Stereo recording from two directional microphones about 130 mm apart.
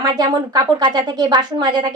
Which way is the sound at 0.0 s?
30° right (ahead or behind).